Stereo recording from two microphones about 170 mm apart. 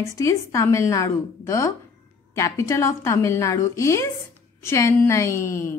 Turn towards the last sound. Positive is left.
turn(degrees=15)  # may be behind; listen again after turning